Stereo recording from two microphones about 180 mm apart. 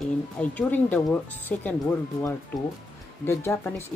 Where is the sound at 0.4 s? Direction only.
10° left (ahead or behind).